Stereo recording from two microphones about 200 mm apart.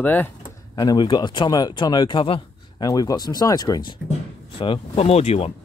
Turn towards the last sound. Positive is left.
turn(degrees=30)  # may be behind; listen again after turning